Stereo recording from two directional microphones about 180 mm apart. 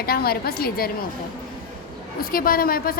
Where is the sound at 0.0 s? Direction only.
60° left (ahead or behind).